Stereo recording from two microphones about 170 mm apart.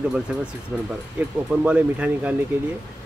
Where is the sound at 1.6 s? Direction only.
5° right (ahead or behind).